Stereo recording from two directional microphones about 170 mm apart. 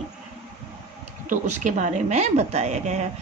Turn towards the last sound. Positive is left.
turn(degrees=-40)  # may be behind; listen again after turning